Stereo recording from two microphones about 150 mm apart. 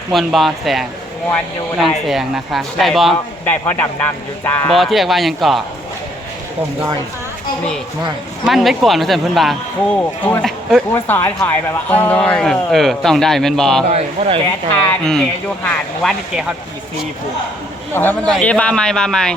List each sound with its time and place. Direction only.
0.1 s speech: centre (ahead or behind)
2.0 s speech: centre (ahead or behind)
3.4 s speech: 10° left (ahead or behind)
4.7 s speech: centre (ahead or behind)
8.4 s speech: centre (ahead or behind)
10.9 s speech: 15° left (ahead or behind)
14.2 s speech: 35° right (ahead or behind)
14.7 s speech: 5° left (ahead or behind)
17.9 s speech: 10° left (ahead or behind)